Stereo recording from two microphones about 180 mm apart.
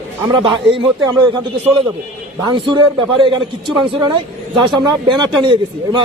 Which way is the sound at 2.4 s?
25° right (ahead or behind).